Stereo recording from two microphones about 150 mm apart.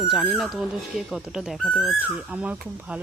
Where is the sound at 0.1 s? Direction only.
Centre (ahead or behind).